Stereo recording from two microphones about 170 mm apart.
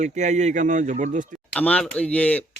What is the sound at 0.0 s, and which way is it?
Speech, 45° right (ahead or behind).